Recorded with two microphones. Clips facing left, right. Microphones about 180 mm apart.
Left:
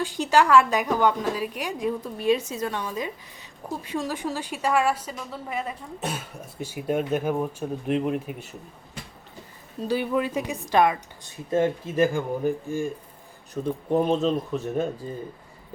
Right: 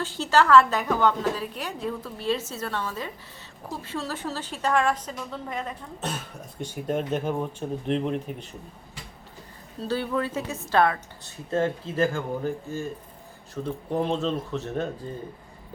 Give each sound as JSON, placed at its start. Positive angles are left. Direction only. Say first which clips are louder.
{"t": 0.0, "sound": "a woman's voice", "louder": "left 1 dB", "side_deg": 15}
{"t": 9.8, "sound": "a woman's voice", "louder": "left 2 dB", "side_deg": 15}